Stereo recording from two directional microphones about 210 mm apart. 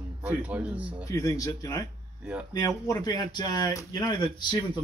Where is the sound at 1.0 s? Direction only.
15° left (ahead or behind).